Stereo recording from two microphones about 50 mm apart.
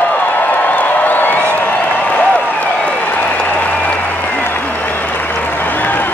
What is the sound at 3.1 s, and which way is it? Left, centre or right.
Applause, left.